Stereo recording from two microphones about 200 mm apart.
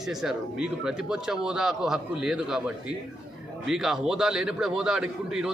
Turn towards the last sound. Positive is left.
turn(degrees=-5)  # may be behind; listen again after turning